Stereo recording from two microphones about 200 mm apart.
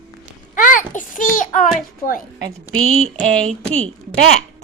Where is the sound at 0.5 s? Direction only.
40° left (ahead or behind).